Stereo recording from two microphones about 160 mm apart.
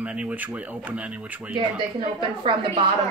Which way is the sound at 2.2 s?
30° right (ahead or behind).